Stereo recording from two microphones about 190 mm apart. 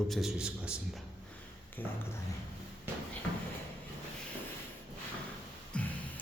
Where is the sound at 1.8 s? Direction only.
10° left (ahead or behind).